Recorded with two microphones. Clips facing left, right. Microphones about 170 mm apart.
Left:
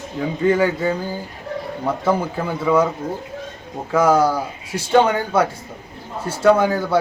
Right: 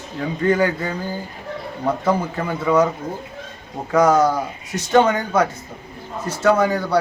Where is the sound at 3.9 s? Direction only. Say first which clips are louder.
Even; 10° left (ahead or behind).